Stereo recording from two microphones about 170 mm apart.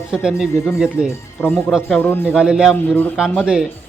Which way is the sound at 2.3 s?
5° right (ahead or behind).